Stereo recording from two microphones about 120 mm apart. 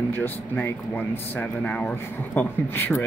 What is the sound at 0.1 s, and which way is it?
Speech, 15° left (ahead or behind).